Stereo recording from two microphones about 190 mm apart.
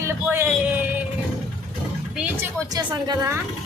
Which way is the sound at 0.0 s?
10° right (ahead or behind).